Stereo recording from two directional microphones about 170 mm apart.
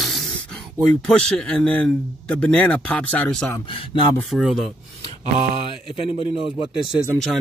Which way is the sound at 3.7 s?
30° left (ahead or behind).